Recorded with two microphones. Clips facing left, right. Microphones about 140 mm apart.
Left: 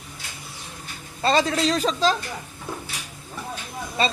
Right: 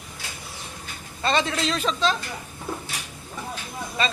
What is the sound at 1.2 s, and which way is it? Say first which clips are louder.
Speech: left 3 dB; 35° left (ahead or behind).